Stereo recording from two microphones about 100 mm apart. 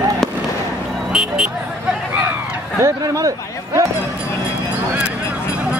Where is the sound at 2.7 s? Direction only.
30° right (ahead or behind).